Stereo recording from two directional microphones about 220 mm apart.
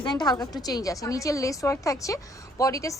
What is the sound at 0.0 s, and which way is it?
A woman's voice, 20° left (ahead or behind).